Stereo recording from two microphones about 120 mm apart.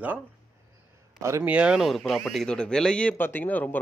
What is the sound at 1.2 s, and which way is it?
Speech, 25° right (ahead or behind).